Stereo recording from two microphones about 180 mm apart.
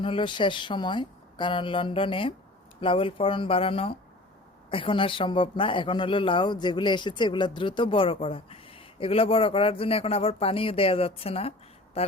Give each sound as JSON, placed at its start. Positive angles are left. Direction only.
{"t": 0.0, "sound": "speech", "side_deg": 30}